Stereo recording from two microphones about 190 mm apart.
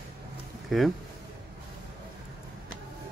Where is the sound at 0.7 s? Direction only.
Centre (ahead or behind).